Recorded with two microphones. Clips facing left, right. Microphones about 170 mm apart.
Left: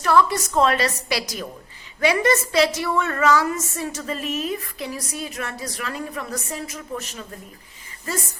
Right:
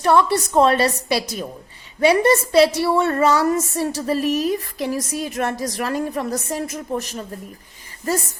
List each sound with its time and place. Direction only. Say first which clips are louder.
0.0 s a woman's voice: right 2 dB; 25° right (ahead or behind)
2.0 s a woman's voice: right 4 dB; 30° right (ahead or behind)